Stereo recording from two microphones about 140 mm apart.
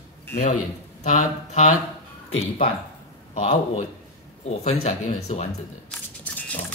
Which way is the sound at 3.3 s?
55° left (ahead or behind).